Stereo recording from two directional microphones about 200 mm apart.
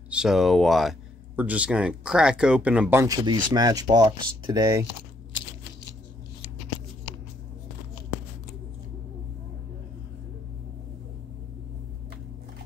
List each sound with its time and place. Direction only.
0.1 s speech: 5° right (ahead or behind)
3.3 s speech: 20° right (ahead or behind)